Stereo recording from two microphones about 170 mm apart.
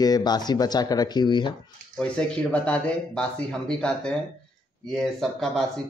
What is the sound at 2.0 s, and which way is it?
Speech, 5° left (ahead or behind).